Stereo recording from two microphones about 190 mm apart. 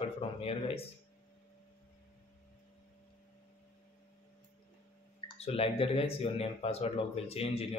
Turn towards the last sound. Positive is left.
turn(degrees=30)  # may be behind; listen again after turning